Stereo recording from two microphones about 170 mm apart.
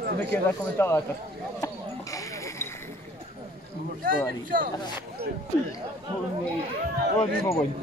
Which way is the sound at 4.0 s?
55° right (ahead or behind).